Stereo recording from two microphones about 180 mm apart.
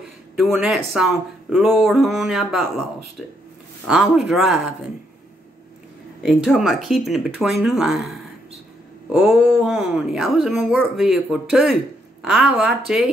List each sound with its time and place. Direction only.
0.4 s speech: 5° right (ahead or behind)
6.2 s speech: centre (ahead or behind)